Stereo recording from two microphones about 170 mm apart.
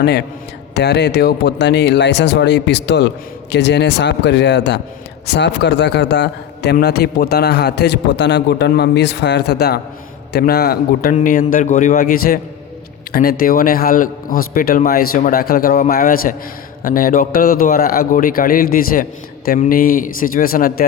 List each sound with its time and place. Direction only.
0.0 s a man's voice: 75° left (ahead or behind)
11.1 s a man's voice: 50° left (ahead or behind)